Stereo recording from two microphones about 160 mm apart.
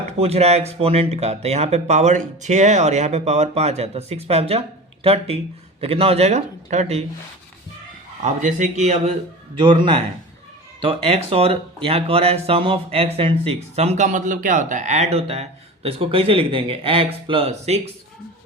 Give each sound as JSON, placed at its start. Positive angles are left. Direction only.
{"t": 0.2, "sound": "speech", "side_deg": -40}
{"t": 8.2, "sound": "speech", "side_deg": -50}
{"t": 9.6, "sound": "speech", "side_deg": -30}